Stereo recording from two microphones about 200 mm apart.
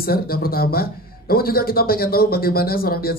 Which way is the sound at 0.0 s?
50° left (ahead or behind).